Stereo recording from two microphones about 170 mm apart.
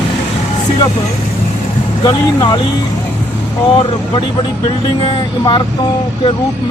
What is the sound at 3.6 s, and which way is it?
Speech, 30° left (ahead or behind).